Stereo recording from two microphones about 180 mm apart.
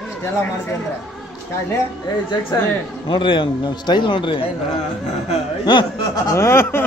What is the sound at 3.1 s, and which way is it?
A man's voice, 25° left (ahead or behind).